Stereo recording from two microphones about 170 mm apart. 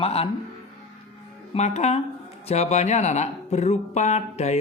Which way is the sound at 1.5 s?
40° left (ahead or behind).